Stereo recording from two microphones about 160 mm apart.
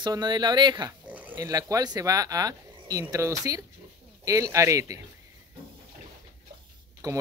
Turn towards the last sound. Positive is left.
turn(degrees=-20)  # may be behind; listen again after turning